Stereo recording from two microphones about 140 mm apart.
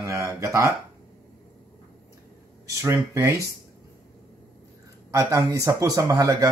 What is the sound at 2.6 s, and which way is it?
Speech, 20° right (ahead or behind).